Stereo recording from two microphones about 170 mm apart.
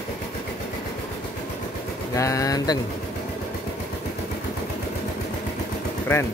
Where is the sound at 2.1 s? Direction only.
20° left (ahead or behind).